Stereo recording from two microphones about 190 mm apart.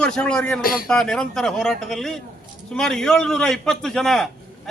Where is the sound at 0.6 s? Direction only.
50° left (ahead or behind).